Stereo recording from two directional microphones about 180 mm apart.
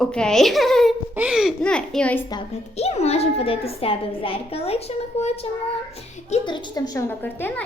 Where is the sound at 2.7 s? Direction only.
35° left (ahead or behind); by 7.6 s 10° left (ahead or behind).